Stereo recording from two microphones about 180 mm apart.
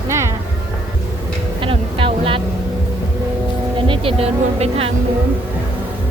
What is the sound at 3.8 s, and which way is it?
Speech, 30° right (ahead or behind).